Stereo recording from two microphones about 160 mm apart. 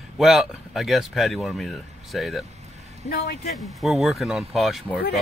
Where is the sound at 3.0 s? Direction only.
80° left.